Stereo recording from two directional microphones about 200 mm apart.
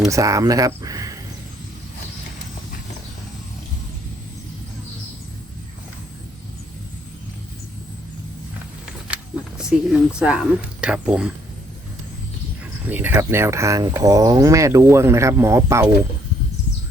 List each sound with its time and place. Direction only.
0.1 s speech: 15° right (ahead or behind)
9.6 s speech: 5° right (ahead or behind)
12.9 s speech: 10° right (ahead or behind)